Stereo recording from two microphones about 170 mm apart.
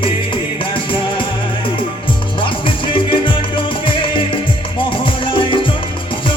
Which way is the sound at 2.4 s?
30° left (ahead or behind).